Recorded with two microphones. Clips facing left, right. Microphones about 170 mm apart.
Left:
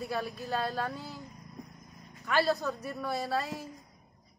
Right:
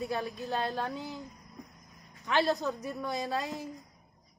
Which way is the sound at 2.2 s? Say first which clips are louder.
Even; 20° right (ahead or behind).